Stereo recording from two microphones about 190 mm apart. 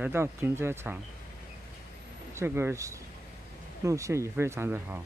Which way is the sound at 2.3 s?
15° right (ahead or behind).